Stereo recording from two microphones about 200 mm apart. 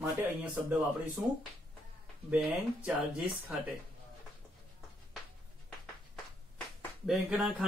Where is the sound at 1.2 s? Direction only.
5° right (ahead or behind).